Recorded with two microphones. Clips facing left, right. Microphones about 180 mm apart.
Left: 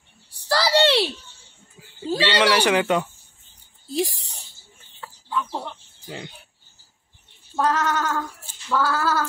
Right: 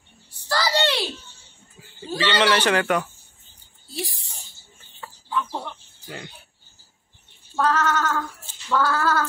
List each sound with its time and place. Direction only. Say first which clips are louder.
0.3 s a sound: left 3 dB; 35° left (ahead or behind)
2.1 s speech: left 1 dB; 10° left (ahead or behind)
5.0 s chicken: even; centre (ahead or behind)
6.0 s speech: left 2 dB; 20° left (ahead or behind)
7.5 s speech: even; 15° left (ahead or behind)